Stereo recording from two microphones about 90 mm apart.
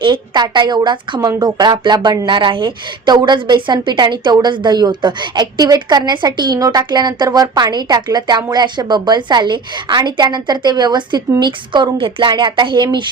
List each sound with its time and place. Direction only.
0.0 s a woman's voice: 60° right (ahead or behind); by 12.3 s 75° right (ahead or behind)
12.3 s a woman's voice: 60° right (ahead or behind)